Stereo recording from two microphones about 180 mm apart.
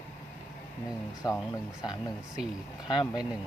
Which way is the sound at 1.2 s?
20° left (ahead or behind).